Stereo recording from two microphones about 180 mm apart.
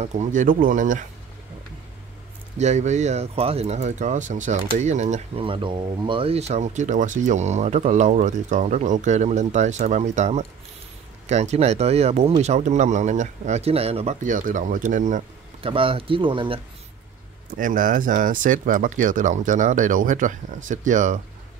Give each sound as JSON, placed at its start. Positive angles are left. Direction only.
{"t": 0.0, "sound": "speech", "side_deg": -45}
{"t": 2.5, "sound": "speech", "side_deg": -40}
{"t": 15.6, "sound": "speech", "side_deg": -30}
{"t": 17.6, "sound": "speech", "side_deg": -45}